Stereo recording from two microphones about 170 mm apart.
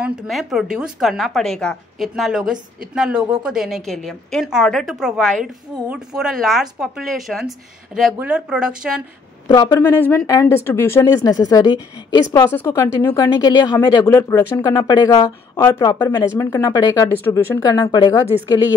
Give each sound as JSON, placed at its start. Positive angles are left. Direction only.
{"t": 0.0, "sound": "a woman's voice", "side_deg": -5}
{"t": 9.5, "sound": "a woman's voice", "side_deg": 25}